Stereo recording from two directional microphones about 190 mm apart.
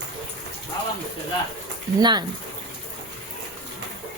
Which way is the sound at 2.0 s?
25° right (ahead or behind).